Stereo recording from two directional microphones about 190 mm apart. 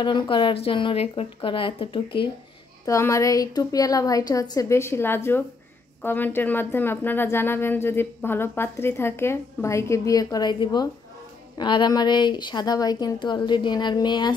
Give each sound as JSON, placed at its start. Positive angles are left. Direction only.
{"t": 0.0, "sound": "speech", "side_deg": 25}
{"t": 2.8, "sound": "speech", "side_deg": 15}